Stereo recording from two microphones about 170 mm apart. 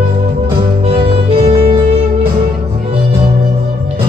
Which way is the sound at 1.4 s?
30° right (ahead or behind).